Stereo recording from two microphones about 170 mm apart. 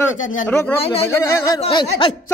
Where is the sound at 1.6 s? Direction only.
30° left (ahead or behind).